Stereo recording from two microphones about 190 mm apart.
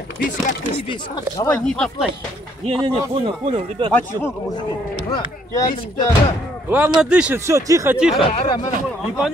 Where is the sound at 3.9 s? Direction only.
10° left (ahead or behind).